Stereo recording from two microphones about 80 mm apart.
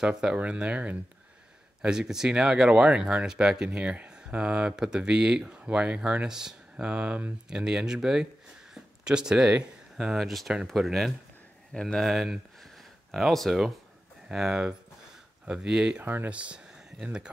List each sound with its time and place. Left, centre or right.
0.0 s speech: centre
16.0 s speech: right
16.3 s speech: centre